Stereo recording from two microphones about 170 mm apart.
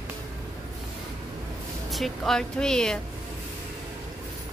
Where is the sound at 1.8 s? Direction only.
Centre (ahead or behind).